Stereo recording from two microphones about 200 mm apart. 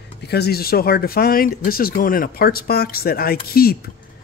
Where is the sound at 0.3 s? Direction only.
50° left (ahead or behind).